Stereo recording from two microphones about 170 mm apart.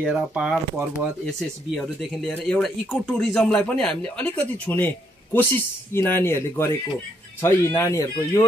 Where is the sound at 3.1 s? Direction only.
5° left (ahead or behind).